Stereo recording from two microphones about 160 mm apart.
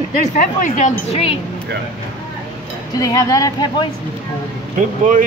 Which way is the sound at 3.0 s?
20° left (ahead or behind).